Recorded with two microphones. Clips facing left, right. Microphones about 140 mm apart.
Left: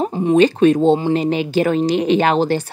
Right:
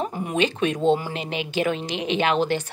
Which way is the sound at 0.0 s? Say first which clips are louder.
Left 10 dB; 30° left (ahead or behind).